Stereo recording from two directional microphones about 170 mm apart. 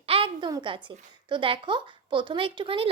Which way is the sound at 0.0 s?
35° right (ahead or behind).